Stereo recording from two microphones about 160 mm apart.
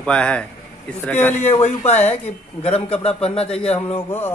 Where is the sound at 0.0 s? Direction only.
5° left (ahead or behind).